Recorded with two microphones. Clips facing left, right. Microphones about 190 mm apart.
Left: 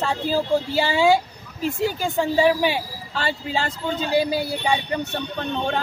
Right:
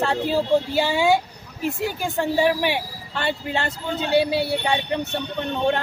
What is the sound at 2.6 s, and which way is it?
Speech, 65° right (ahead or behind).